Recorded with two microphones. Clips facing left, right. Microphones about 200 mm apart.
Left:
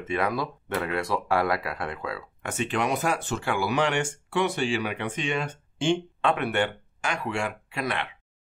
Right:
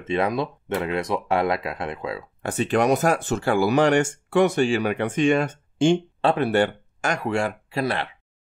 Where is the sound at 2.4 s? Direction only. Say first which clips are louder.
Right 7 dB; 35° right (ahead or behind).